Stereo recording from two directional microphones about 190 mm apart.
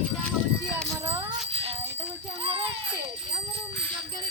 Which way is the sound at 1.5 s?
30° right (ahead or behind).